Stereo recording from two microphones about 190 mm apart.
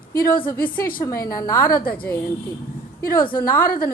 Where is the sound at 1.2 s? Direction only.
15° left (ahead or behind).